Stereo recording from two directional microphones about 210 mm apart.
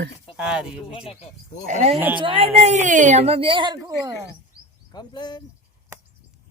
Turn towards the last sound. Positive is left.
turn(degrees=20)  # may be behind; listen again after turning